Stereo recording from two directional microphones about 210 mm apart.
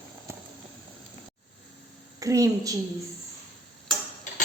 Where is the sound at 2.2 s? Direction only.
15° right (ahead or behind).